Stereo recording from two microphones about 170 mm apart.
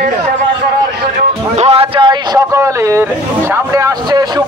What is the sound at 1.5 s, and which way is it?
A man's voice, 40° right (ahead or behind).